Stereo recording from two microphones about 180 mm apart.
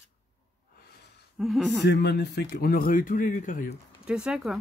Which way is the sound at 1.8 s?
70° left (ahead or behind).